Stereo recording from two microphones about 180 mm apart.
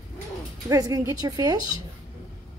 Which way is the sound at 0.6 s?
20° right (ahead or behind).